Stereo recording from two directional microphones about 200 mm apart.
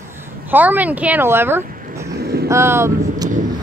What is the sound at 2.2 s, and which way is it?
Vehicle, 50° right (ahead or behind).